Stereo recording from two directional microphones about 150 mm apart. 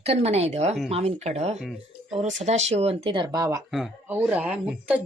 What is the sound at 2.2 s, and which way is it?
Speech, 50° right (ahead or behind).